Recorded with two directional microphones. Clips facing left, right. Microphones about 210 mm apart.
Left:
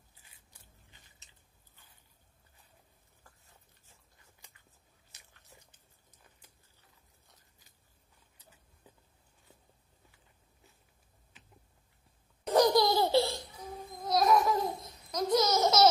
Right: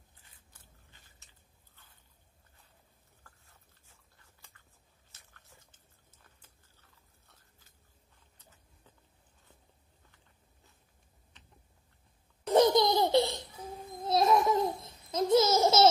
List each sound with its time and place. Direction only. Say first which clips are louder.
0.8 s chewing: even; 15° left (ahead or behind)
5.1 s biting: left 1 dB; 15° left (ahead or behind)
8.4 s a sound: left 1 dB; 10° left (ahead or behind)
12.5 s babbling: right 1 dB; 20° right (ahead or behind)
15.6 s baby laughter: right 1 dB; 25° right (ahead or behind)